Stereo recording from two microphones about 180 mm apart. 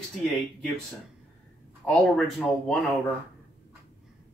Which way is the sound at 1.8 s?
5° left (ahead or behind).